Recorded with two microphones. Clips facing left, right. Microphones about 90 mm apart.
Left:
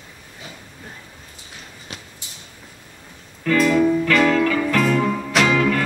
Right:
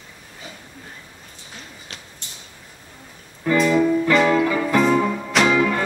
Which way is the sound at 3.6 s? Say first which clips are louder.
Left 1 dB; 5° right (ahead or behind).